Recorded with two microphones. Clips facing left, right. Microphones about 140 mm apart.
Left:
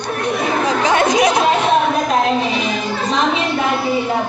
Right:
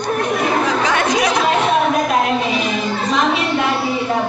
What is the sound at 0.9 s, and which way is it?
Chatter, 30° left (ahead or behind).